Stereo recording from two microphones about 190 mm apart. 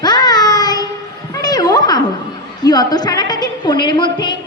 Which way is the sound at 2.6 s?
20° left (ahead or behind).